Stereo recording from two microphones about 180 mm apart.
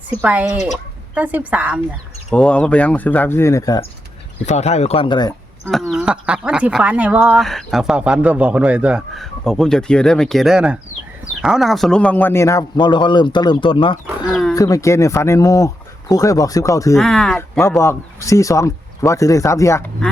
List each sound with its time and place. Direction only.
0.2 s a woman's voice: 10° right (ahead or behind)
2.3 s speech: 5° left (ahead or behind)
4.4 s speech: 40° left (ahead or behind)
5.6 s a man's voice: centre (ahead or behind); by 14.0 s 30° left (ahead or behind)
14.3 s wild animals: 5° left (ahead or behind)
14.5 s speech: 20° left (ahead or behind)
17.0 s speech: centre (ahead or behind)
17.6 s speech: 15° left (ahead or behind)